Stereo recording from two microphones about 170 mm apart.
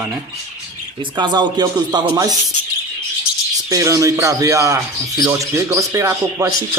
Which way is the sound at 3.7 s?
20° right (ahead or behind).